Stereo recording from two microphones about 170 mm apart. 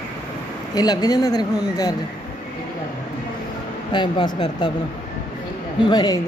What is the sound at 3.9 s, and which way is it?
Speech, 25° left (ahead or behind).